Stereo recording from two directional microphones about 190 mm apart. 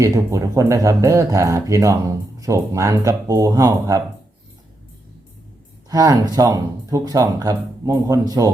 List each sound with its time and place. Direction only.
0.0 s speech: 15° right (ahead or behind)
5.9 s speech: 20° right (ahead or behind)